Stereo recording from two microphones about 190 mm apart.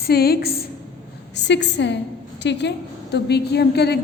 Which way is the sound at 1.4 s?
65° left (ahead or behind).